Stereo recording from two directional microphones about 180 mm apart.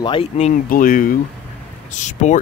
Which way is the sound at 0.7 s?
50° left (ahead or behind).